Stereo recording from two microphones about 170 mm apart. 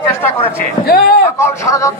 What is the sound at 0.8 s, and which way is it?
Speech, 60° left (ahead or behind).